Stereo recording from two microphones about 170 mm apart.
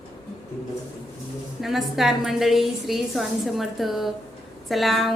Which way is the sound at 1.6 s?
Centre (ahead or behind).